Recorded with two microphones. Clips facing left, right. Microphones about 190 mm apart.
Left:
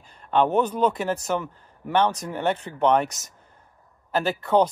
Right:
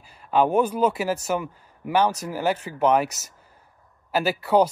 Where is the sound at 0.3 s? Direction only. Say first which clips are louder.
Right 1 dB; 10° right (ahead or behind).